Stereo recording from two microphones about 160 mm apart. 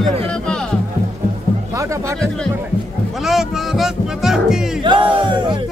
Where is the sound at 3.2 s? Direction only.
Centre (ahead or behind).